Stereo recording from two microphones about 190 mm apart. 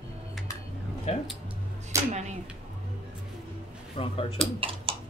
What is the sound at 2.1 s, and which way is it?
Speech, 35° right (ahead or behind).